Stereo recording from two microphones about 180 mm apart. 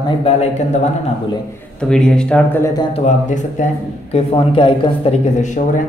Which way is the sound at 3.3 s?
40° left (ahead or behind).